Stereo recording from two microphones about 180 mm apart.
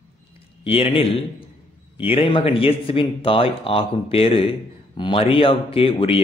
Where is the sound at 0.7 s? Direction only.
30° left (ahead or behind).